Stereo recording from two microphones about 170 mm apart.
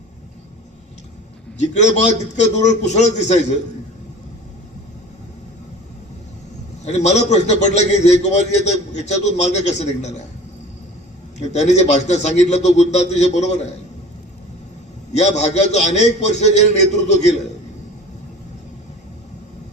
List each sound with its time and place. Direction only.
1.5 s a man's voice: 45° left (ahead or behind)
6.8 s a man's voice: 40° left (ahead or behind)
11.3 s a man's voice: 40° left (ahead or behind)
15.2 s a man's voice: 40° left (ahead or behind)